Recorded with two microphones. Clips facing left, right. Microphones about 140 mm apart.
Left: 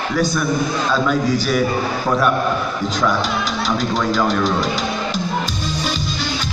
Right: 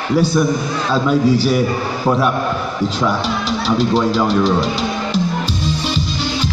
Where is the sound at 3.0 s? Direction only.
30° right (ahead or behind).